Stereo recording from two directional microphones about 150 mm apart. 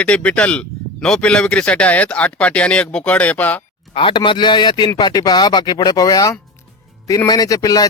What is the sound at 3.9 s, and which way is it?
Speech, 35° left (ahead or behind).